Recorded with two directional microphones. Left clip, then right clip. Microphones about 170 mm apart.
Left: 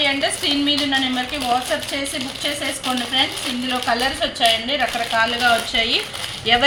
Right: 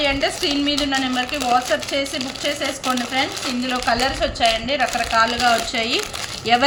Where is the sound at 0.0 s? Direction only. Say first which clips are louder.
Left 1 dB; 25° right (ahead or behind).